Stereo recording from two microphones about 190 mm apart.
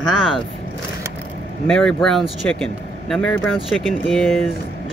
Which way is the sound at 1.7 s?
5° left (ahead or behind).